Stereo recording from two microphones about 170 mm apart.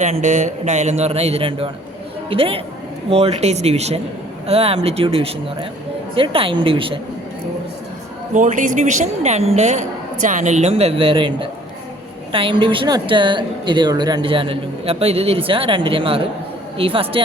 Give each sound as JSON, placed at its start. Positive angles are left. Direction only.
{"t": 0.0, "sound": "a woman's voice", "side_deg": -45}
{"t": 8.3, "sound": "a woman's voice", "side_deg": -45}